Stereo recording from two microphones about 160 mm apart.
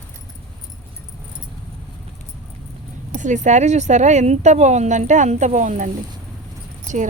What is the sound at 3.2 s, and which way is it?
Speech, 50° right (ahead or behind).